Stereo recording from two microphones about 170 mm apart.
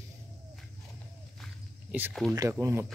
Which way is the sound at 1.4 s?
10° right (ahead or behind).